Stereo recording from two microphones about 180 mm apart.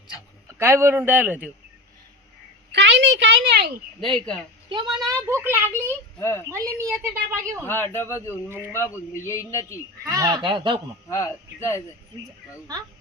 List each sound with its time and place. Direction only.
0.6 s speech: 15° right (ahead or behind)
2.7 s a sound: 75° right (ahead or behind)
4.0 s speech: centre (ahead or behind)
4.7 s speech: 25° right (ahead or behind)
5.0 s speech: 15° right (ahead or behind)
5.7 s a man's voice: 15° left (ahead or behind)
6.5 s speech: 15° right (ahead or behind)
7.6 s a man's voice: 10° left (ahead or behind)
10.0 s speech: 20° right (ahead or behind)
11.1 s a man's voice: 15° left (ahead or behind)